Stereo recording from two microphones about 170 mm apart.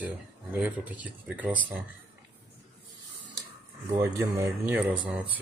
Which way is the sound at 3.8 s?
15° right (ahead or behind).